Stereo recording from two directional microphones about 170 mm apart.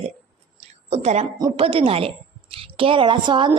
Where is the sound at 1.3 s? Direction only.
30° right (ahead or behind).